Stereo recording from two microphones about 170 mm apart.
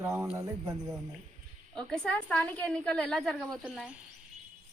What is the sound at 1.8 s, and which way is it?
A woman's voice, 5° left (ahead or behind).